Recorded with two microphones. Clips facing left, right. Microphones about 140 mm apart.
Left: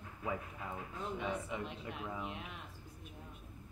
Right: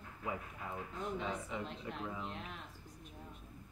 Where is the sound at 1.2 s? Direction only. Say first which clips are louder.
Left 4 dB; 15° left (ahead or behind).